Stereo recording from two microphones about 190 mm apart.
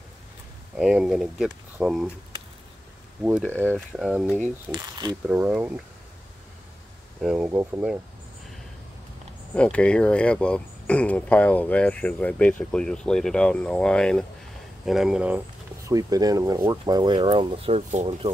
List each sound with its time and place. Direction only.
0.7 s speech: centre (ahead or behind)
3.4 s speech: 10° left (ahead or behind)
3.9 s speech: 5° right (ahead or behind)
4.6 s speech: 20° right (ahead or behind)
5.3 s speech: 10° right (ahead or behind)
7.2 s speech: 5° right (ahead or behind)
9.5 s speech: 5° left (ahead or behind)
15.9 s speech: 20° right (ahead or behind)